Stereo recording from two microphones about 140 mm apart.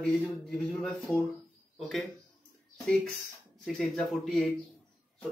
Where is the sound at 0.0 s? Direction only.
5° left (ahead or behind).